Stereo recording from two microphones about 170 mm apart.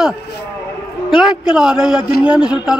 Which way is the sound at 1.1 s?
5° right (ahead or behind).